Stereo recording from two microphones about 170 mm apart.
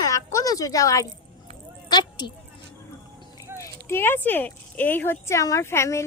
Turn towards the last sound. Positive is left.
turn(degrees=15)  # may be behind; listen again after turning